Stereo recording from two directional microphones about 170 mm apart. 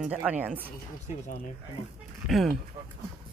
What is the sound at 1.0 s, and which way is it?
Speech, 45° left (ahead or behind).